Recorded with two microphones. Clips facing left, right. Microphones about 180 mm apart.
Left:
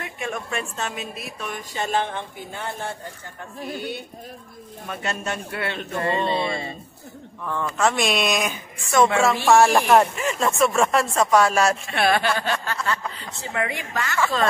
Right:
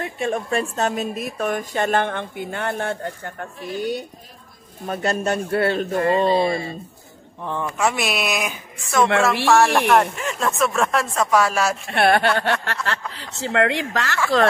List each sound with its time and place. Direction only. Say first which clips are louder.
0.0 s a woman's voice: right 6 dB; 35° right (ahead or behind); by 3.4 s 70° right (ahead or behind)
3.7 s speech: right 9 dB; 40° right (ahead or behind)
7.4 s speech: even; 15° right (ahead or behind)
11.9 s speech: right 3 dB; 60° right (ahead or behind); by 14.1 s 80° right